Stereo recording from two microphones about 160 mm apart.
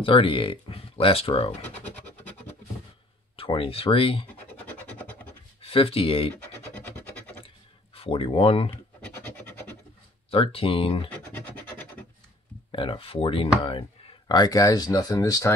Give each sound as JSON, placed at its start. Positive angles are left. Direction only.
{"t": 0.0, "sound": "speech", "side_deg": 35}
{"t": 3.3, "sound": "speech", "side_deg": 35}
{"t": 4.3, "sound": "scratch", "side_deg": 10}
{"t": 5.6, "sound": "speech", "side_deg": 35}
{"t": 6.3, "sound": "scratch", "side_deg": 10}
{"t": 7.4, "sound": "a sound", "side_deg": 35}
{"t": 9.0, "sound": "scratch", "side_deg": 10}
{"t": 10.3, "sound": "speech", "side_deg": 35}
{"t": 11.3, "sound": "scratch", "side_deg": 10}
{"t": 12.7, "sound": "speech", "side_deg": 30}